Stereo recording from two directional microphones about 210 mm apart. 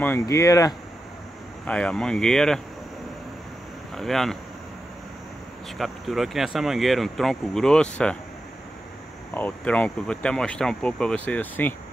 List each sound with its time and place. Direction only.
0.0 s speech: 10° left (ahead or behind)
1.7 s speech: 5° left (ahead or behind)
3.9 s speech: centre (ahead or behind)
5.8 s speech: centre (ahead or behind)
9.3 s speech: 5° left (ahead or behind)